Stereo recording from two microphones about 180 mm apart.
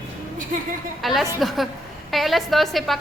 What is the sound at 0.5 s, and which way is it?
Speech, 50° right (ahead or behind).